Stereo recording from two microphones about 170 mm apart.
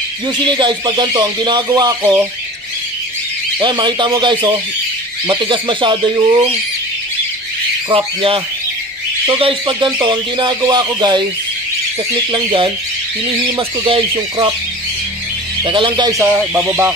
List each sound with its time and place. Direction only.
0.4 s speech: 25° right (ahead or behind)
3.5 s speech: 25° right (ahead or behind)
7.9 s speech: 35° right (ahead or behind)
9.4 s speech: 30° right (ahead or behind)
12.3 s speech: 30° right (ahead or behind)
15.6 s speech: 25° right (ahead or behind)
16.2 s speech: 5° right (ahead or behind)